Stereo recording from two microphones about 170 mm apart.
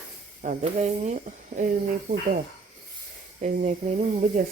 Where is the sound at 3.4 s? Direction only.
40° right (ahead or behind).